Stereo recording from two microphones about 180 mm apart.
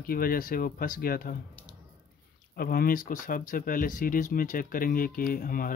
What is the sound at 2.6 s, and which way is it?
Speech, 55° left (ahead or behind).